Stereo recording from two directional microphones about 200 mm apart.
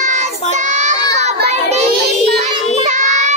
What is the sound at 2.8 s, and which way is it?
Child singing, 35° right (ahead or behind).